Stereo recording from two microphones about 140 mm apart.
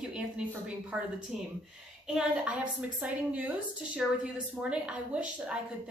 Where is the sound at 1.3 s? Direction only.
Centre (ahead or behind).